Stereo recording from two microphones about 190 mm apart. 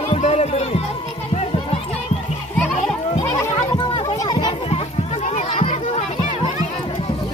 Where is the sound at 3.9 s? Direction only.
25° left (ahead or behind).